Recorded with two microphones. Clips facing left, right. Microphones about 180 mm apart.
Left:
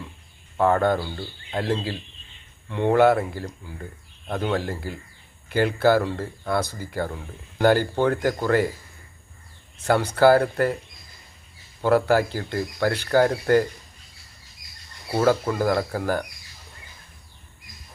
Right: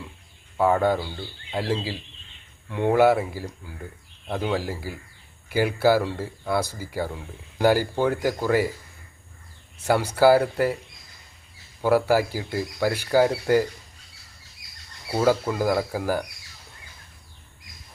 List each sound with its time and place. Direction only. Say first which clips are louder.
0.5 s speech: left 1 dB; 10° right (ahead or behind)
9.8 s speech: left 1 dB; 10° right (ahead or behind)
11.8 s speech: left 1 dB; 10° right (ahead or behind)
14.6 s bird: left 1 dB; 40° left (ahead or behind)
15.2 s speech: left 1 dB; 10° right (ahead or behind)